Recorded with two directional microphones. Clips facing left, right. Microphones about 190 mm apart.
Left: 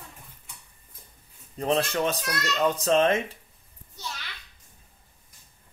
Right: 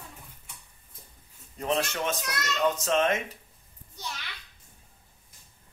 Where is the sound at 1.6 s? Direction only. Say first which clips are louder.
Left 4 dB; 35° left (ahead or behind).